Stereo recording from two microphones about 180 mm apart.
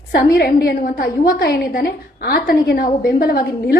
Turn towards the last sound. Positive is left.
turn(degrees=55)  # may be behind; listen again after turning